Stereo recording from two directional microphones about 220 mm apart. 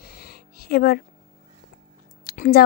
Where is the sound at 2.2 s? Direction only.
40° left (ahead or behind).